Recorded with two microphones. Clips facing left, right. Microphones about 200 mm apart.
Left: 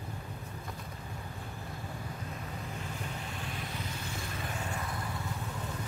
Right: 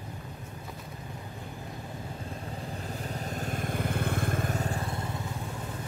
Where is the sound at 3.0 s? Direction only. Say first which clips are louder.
Right 5 dB; 40° right (ahead or behind).